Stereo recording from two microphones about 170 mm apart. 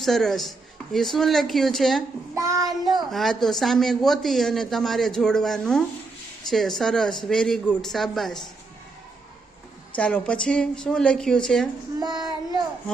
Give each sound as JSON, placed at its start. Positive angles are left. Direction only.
{"t": 0.0, "sound": "speech", "side_deg": 0}
{"t": 2.3, "sound": "child singing", "side_deg": -20}
{"t": 3.1, "sound": "speech", "side_deg": 0}
{"t": 9.9, "sound": "speech", "side_deg": 5}
{"t": 11.9, "sound": "child singing", "side_deg": -25}